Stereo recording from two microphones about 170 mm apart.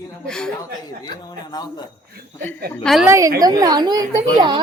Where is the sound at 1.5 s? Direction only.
25° left (ahead or behind).